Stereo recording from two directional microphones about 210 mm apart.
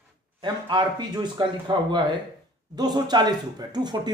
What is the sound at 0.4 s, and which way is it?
Speech, 20° right (ahead or behind).